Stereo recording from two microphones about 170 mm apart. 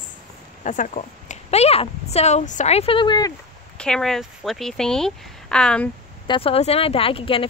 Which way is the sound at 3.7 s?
5° left (ahead or behind).